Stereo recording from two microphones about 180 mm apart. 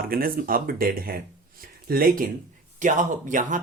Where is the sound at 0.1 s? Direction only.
55° right (ahead or behind).